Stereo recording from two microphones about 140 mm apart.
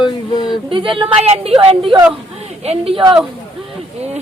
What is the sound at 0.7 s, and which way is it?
A woman's voice, 40° right (ahead or behind).